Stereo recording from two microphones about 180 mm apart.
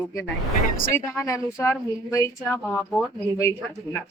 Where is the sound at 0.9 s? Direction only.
15° left (ahead or behind).